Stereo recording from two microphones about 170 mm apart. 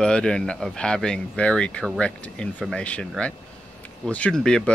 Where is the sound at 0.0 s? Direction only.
5° left (ahead or behind).